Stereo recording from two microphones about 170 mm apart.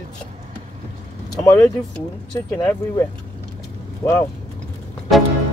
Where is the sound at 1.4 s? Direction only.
15° left (ahead or behind).